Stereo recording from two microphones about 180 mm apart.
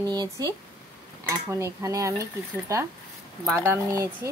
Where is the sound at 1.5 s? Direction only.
15° right (ahead or behind).